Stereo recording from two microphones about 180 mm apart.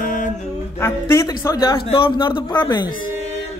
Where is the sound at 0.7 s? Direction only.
15° left (ahead or behind).